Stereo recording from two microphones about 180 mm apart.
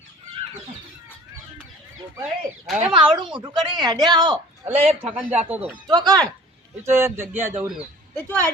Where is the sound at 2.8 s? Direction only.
30° right (ahead or behind).